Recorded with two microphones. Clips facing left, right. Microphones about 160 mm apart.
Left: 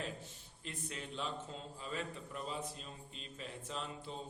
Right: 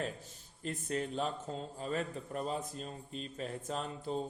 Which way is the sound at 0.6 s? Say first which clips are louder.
Right 10 dB; 45° right (ahead or behind).